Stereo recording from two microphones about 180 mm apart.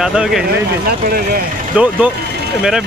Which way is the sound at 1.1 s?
55° right (ahead or behind).